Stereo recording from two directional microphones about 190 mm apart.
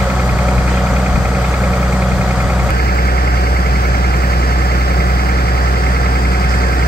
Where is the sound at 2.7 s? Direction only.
55° left (ahead or behind).